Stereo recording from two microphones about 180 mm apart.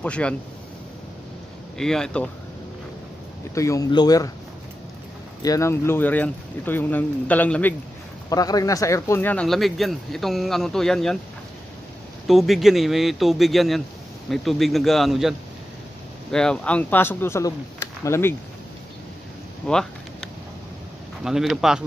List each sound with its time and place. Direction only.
0.0 s speech: 5° left (ahead or behind)
1.8 s speech: 5° left (ahead or behind)
3.5 s speech: 20° left (ahead or behind)
5.4 s speech: 20° left (ahead or behind)
8.3 s speech: 20° left (ahead or behind); by 11.1 s centre (ahead or behind)
12.3 s speech: centre (ahead or behind)
19.7 s a sound: 5° left (ahead or behind)
21.2 s speech: centre (ahead or behind)